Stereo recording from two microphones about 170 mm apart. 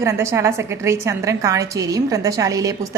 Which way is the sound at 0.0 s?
15° right (ahead or behind).